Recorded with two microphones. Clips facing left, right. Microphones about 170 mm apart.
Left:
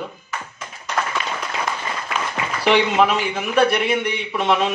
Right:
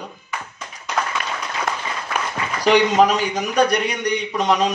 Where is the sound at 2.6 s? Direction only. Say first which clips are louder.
Right 2 dB; 40° right (ahead or behind).